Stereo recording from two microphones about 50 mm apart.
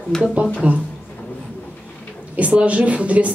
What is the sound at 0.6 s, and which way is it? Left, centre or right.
Speech, right.